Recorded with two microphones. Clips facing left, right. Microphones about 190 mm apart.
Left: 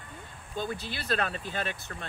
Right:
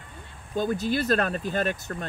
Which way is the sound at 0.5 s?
45° right (ahead or behind).